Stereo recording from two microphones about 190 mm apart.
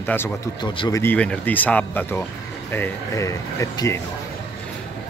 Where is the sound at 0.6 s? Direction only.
20° left (ahead or behind).